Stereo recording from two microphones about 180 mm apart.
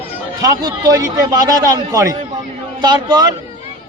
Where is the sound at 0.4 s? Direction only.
20° right (ahead or behind).